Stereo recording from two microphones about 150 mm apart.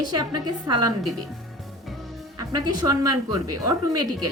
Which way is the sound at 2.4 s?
25° right (ahead or behind).